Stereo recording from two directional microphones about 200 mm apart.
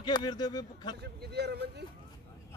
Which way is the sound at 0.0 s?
20° left (ahead or behind).